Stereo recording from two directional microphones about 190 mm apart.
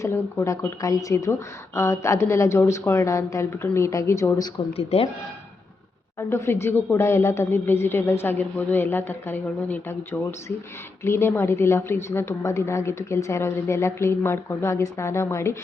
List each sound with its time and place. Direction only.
0.0 s speech: 15° left (ahead or behind)
4.8 s speech: 30° left (ahead or behind)
6.1 s speech: 15° left (ahead or behind)